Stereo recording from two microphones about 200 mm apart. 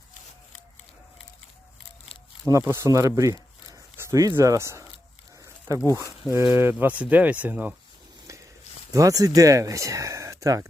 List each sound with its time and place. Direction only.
2.5 s speech: 15° right (ahead or behind)
5.4 s a sound: 15° right (ahead or behind)
5.8 s speech: 15° left (ahead or behind)
6.2 s speech: 10° right (ahead or behind)
8.3 s a sound: 15° right (ahead or behind)
8.9 s speech: 15° right (ahead or behind)